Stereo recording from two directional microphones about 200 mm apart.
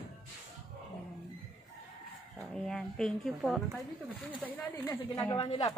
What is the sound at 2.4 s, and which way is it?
Speech, centre (ahead or behind).